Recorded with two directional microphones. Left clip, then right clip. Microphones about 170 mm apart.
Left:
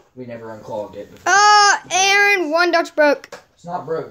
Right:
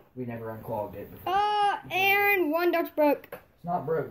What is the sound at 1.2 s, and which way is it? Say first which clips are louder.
Babbling: left 13 dB; 40° left (ahead or behind).